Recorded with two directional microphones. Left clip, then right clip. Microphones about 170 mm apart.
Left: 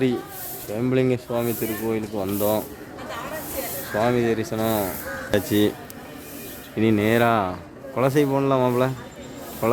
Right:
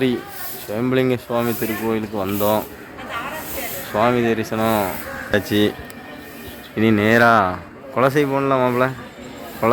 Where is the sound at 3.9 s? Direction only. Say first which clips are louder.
Right 4 dB; 5° left (ahead or behind).